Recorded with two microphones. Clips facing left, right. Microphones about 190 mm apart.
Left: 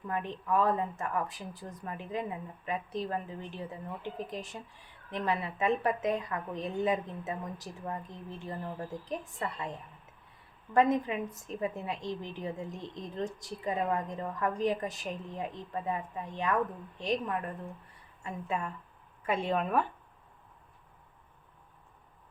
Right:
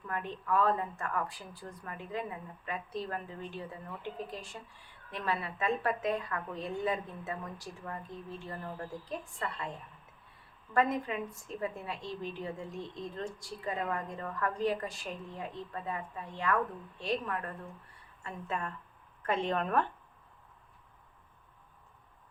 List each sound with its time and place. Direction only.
0.1 s a woman's voice: 20° left (ahead or behind)
10.8 s a woman's voice: 20° left (ahead or behind)